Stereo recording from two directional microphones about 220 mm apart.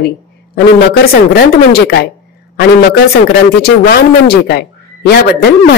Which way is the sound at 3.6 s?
45° left (ahead or behind).